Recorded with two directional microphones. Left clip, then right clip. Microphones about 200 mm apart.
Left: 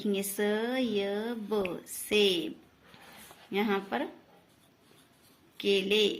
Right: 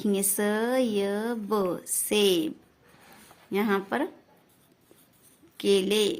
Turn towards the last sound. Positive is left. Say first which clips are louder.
# right 3 dB
turn(degrees=-55)  # may be behind; listen again after turning